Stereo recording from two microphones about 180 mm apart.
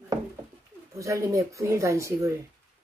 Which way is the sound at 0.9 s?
15° right (ahead or behind).